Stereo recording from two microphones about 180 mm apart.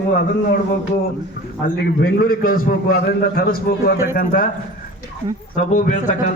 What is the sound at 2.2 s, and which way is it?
A man's voice, 55° left (ahead or behind).